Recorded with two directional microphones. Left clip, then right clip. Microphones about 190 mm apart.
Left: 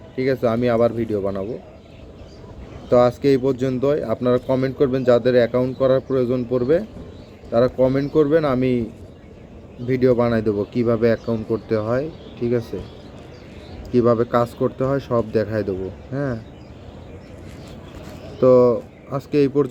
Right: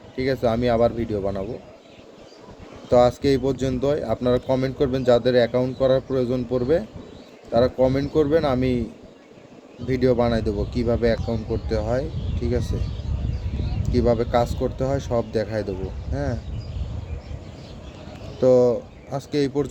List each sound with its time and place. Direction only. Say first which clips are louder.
0.2 s speech: left 2 dB; 5° left (ahead or behind)
2.9 s speech: left 2 dB; 10° left (ahead or behind)
13.9 s speech: left 3 dB; 5° left (ahead or behind)
18.5 s speech: left 3 dB; 20° right (ahead or behind)
19.1 s speech: left 5 dB; 5° left (ahead or behind)